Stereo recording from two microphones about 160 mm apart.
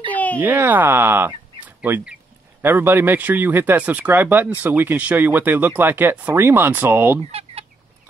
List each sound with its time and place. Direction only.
0.1 s a sound: 10° left (ahead or behind)
0.4 s speech: 10° right (ahead or behind)
7.2 s chicken: 40° right (ahead or behind)